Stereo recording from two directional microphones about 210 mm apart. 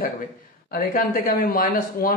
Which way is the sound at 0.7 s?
45° left (ahead or behind).